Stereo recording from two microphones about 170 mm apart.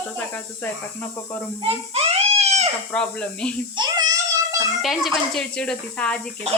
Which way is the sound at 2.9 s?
5° left (ahead or behind).